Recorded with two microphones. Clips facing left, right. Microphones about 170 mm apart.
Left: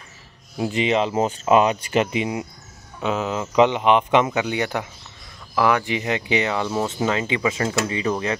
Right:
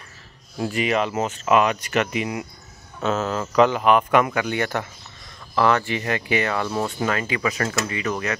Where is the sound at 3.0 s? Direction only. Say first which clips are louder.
Even; 15° left (ahead or behind).